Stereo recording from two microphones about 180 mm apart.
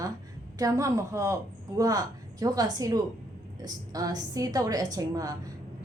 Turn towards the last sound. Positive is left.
turn(degrees=-20)  # may be behind; listen again after turning